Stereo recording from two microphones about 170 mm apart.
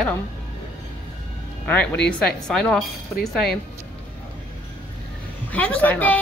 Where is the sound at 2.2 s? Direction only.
5° left (ahead or behind).